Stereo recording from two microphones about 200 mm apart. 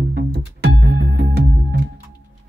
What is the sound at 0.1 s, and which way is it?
Music, 55° right (ahead or behind).